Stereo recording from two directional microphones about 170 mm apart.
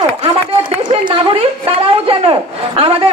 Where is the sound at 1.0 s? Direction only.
30° right (ahead or behind).